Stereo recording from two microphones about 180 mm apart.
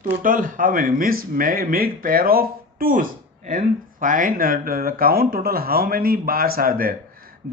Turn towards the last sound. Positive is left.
turn(degrees=-55)  # may be behind; listen again after turning